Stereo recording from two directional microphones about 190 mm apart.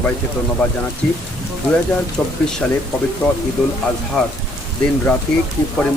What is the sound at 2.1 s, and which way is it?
Speech, 5° left (ahead or behind).